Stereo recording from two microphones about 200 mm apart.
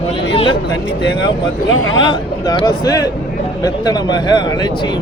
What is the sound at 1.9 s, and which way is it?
A man's voice, 20° left (ahead or behind).